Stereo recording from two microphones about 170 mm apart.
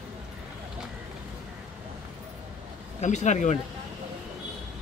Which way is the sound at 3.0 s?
45° left (ahead or behind).